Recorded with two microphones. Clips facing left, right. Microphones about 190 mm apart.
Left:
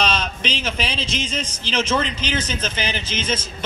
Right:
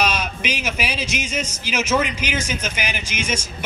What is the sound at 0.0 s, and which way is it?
Speech, 10° right (ahead or behind).